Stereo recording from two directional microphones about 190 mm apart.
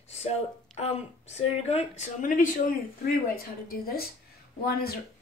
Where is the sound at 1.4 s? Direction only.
35° left (ahead or behind).